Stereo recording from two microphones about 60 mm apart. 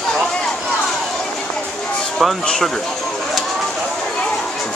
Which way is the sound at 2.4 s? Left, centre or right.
Centre.